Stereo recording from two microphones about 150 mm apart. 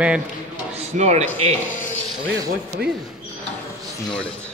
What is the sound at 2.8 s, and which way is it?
Speech, 90° right.